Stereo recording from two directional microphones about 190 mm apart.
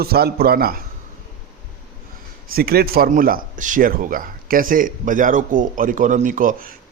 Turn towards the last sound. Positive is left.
turn(degrees=-45)  # may be behind; listen again after turning